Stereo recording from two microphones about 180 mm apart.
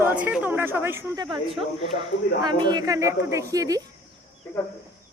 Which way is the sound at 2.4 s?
20° right (ahead or behind).